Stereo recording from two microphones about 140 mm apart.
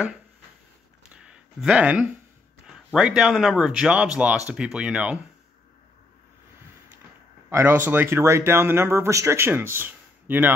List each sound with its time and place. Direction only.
1.1 s a sound: 5° right (ahead or behind)
2.6 s speech: 5° right (ahead or behind)
7.4 s speech: 15° right (ahead or behind)